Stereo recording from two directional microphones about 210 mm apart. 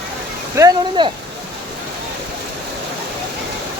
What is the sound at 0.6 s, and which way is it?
Speech, 15° right (ahead or behind).